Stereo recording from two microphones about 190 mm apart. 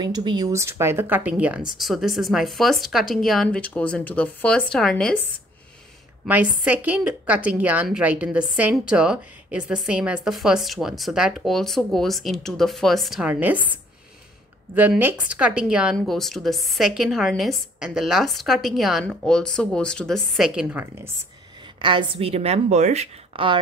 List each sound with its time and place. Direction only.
0.0 s a woman's voice: 20° right (ahead or behind); by 5.2 s 5° left (ahead or behind)
6.2 s a woman's voice: 10° right (ahead or behind)
14.8 s a woman's voice: 10° right (ahead or behind)
20.8 s a woman's voice: 15° right (ahead or behind)
21.7 s a woman's voice: 25° right (ahead or behind)